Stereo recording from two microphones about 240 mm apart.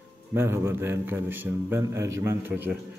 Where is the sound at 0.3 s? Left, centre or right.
Centre.